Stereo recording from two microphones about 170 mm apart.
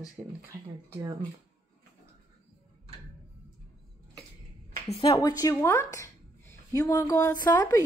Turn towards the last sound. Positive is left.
turn(degrees=20)  # may be behind; listen again after turning